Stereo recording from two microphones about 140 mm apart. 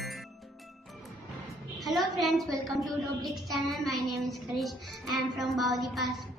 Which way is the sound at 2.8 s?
Centre (ahead or behind).